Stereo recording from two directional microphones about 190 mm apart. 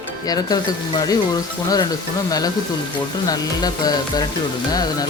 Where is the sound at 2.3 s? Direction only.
20° left (ahead or behind).